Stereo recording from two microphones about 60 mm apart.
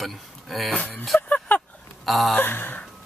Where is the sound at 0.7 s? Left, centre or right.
Centre.